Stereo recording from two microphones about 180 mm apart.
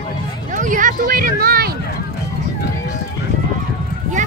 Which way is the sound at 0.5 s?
45° right (ahead or behind).